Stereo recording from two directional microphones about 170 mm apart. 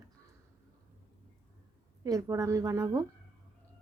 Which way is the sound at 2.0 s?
20° right (ahead or behind).